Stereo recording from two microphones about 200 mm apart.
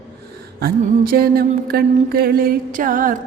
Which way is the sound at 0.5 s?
50° right (ahead or behind).